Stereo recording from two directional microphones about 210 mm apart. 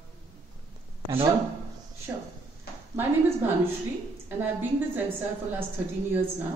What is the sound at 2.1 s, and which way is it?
Speech, 10° right (ahead or behind).